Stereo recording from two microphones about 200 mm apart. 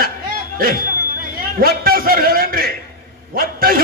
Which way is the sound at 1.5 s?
45° right (ahead or behind).